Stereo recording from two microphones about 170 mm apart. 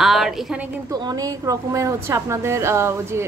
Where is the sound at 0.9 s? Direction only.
25° right (ahead or behind).